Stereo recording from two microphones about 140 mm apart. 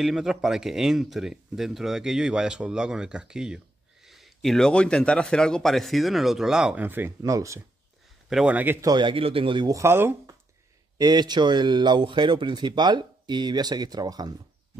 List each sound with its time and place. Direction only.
0.0 s speech: 5° right (ahead or behind); by 7.6 s 20° right (ahead or behind)
8.3 s speech: 5° right (ahead or behind)
8.8 s speech: 35° right (ahead or behind)
9.8 s speech: 15° right (ahead or behind)
11.0 s speech: 30° right (ahead or behind)